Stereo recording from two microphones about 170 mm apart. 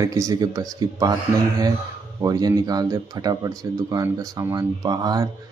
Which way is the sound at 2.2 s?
20° right (ahead or behind).